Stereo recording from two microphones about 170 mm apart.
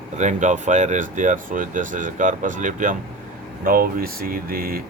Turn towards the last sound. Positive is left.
turn(degrees=-60)  # may be behind; listen again after turning